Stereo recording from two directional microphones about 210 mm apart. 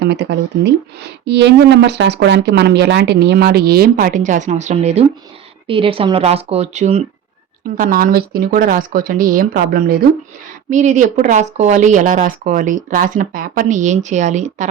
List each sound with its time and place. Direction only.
0.0 s speech: 55° right (ahead or behind); by 7.0 s 30° right (ahead or behind)
7.8 s speech: 45° right (ahead or behind)